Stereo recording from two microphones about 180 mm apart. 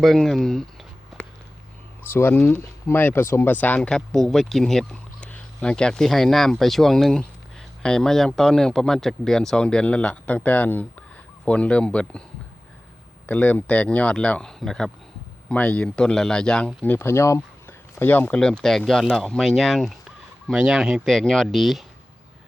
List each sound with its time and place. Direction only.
0.0 s speech: centre (ahead or behind)
2.0 s speech: 10° left (ahead or behind)
13.2 s speech: 10° left (ahead or behind)